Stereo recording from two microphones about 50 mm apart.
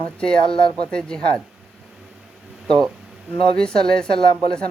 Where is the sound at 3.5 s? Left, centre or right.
Centre.